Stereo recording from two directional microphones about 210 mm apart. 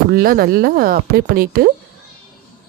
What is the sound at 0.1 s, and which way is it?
Speech, 45° right (ahead or behind).